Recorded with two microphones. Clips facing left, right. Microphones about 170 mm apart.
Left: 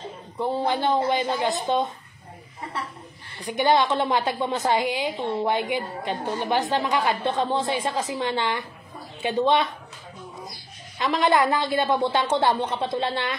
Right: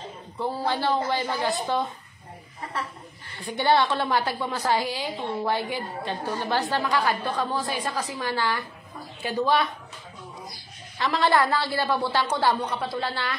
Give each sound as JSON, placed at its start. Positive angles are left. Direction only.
{"t": 0.4, "sound": "a woman's voice", "side_deg": 20}
{"t": 3.3, "sound": "a woman's voice", "side_deg": 15}
{"t": 11.0, "sound": "a woman's voice", "side_deg": 20}